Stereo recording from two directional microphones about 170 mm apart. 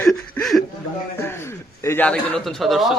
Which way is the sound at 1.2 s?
15° left (ahead or behind).